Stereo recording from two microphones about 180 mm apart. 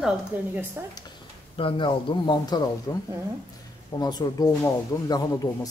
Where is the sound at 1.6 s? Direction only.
25° left (ahead or behind).